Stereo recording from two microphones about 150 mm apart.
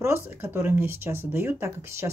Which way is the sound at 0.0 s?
15° right (ahead or behind).